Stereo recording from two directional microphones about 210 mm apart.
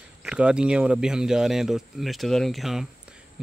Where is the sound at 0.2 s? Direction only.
5° right (ahead or behind).